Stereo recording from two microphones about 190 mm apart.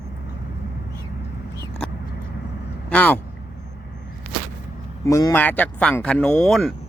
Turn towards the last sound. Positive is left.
turn(degrees=0)  # may be behind; listen again after turning